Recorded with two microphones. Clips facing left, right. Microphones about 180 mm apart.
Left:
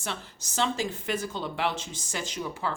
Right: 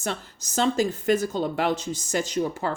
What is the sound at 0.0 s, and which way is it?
Speech, 40° right (ahead or behind).